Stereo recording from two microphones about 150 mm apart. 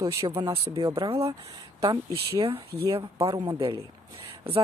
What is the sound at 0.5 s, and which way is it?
Speech, 35° right (ahead or behind).